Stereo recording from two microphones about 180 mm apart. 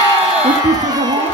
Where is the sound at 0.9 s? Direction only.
20° right (ahead or behind).